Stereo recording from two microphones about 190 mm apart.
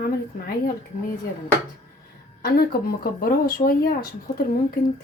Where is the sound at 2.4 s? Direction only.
50° left (ahead or behind).